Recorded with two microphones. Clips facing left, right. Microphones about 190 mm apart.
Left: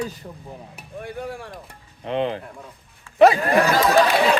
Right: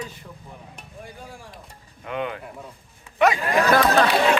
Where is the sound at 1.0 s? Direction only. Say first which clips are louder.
Left 10 dB; 65° left (ahead or behind).